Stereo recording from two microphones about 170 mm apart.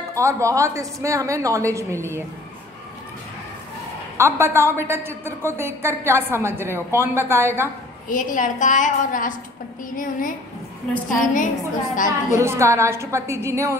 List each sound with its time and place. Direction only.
0.1 s a woman's voice: 15° right (ahead or behind)
4.2 s a woman's voice: 15° right (ahead or behind)
8.1 s a woman's voice: 50° left (ahead or behind)
11.1 s a woman's voice: 50° left (ahead or behind)
12.4 s a woman's voice: 15° right (ahead or behind)